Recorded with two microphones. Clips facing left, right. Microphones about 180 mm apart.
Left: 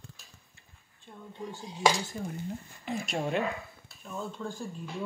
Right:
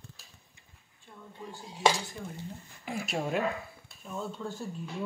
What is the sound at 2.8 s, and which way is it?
Speech, 5° right (ahead or behind).